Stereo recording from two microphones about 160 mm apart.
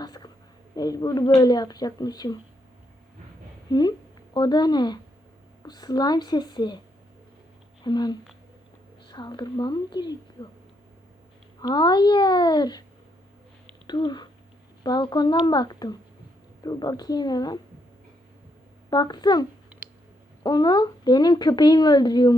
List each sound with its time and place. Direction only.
0.0 s a sound: 25° left (ahead or behind)
0.8 s speech: 25° left (ahead or behind)
3.7 s a woman's voice: 25° left (ahead or behind)
7.9 s speech: 25° left (ahead or behind)
11.6 s speech: 30° left (ahead or behind)
13.8 s speech: 30° left (ahead or behind)
18.9 s speech: 25° left (ahead or behind)